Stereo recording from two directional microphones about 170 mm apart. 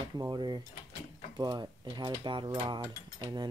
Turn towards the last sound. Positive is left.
turn(degrees=-25)  # may be behind; listen again after turning